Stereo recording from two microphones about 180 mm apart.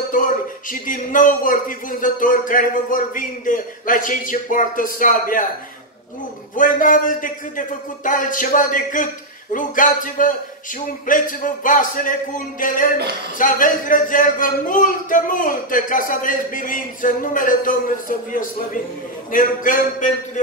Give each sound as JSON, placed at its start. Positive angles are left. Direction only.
{"t": 0.7, "sound": "a man's voice", "side_deg": 50}
{"t": 6.5, "sound": "a man's voice", "side_deg": 45}